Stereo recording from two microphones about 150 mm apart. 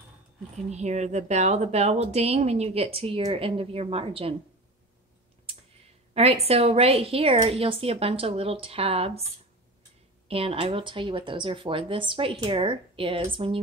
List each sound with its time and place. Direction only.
0.7 s a woman's voice: 50° right (ahead or behind)
6.1 s speech: 45° right (ahead or behind)
10.2 s speech: 40° right (ahead or behind)